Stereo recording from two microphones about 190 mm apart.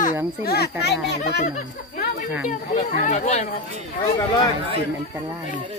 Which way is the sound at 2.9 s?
40° left (ahead or behind).